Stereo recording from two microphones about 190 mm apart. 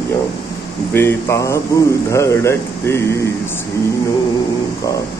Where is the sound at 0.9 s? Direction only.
15° left (ahead or behind).